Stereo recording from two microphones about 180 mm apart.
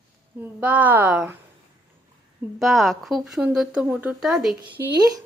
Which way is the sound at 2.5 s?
Centre (ahead or behind).